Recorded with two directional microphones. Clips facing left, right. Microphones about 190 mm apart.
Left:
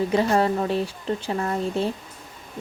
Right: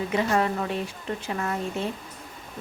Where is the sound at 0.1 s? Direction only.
35° left (ahead or behind).